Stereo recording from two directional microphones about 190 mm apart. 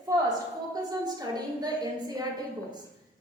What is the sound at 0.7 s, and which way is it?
A woman's voice, 20° right (ahead or behind).